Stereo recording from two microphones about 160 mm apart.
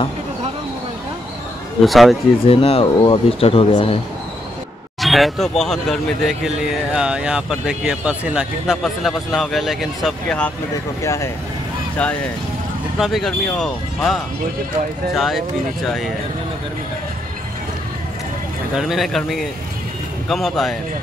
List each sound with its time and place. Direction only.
1.9 s speech: centre (ahead or behind)
2.4 s speech: 35° left (ahead or behind)
5.0 s speech: centre (ahead or behind)
11.0 s speech: 20° left (ahead or behind)
12.0 s speech: 5° left (ahead or behind)
18.8 s speech: centre (ahead or behind)